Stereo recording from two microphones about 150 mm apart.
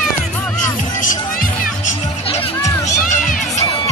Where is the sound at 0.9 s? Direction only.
65° left (ahead or behind).